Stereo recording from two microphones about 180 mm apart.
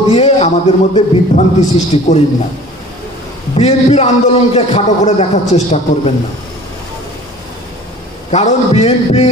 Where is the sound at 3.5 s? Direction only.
35° left (ahead or behind).